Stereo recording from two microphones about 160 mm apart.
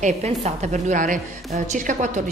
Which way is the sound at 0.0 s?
45° right (ahead or behind).